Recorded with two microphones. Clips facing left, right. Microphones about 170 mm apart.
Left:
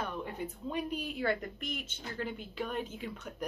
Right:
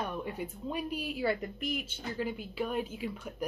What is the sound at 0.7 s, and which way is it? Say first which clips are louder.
A woman's voice: right 1 dB; 5° right (ahead or behind).